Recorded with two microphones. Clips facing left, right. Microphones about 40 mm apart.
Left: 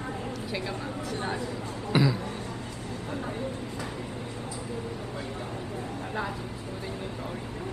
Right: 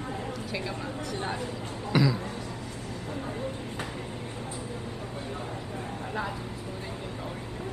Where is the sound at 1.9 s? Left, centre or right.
Left.